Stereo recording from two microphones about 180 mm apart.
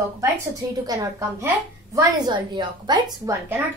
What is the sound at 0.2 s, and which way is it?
A woman's voice, 15° right (ahead or behind).